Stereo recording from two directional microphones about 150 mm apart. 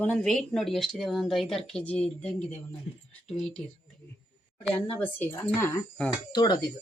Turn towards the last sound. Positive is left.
turn(degrees=30)  # may be behind; listen again after turning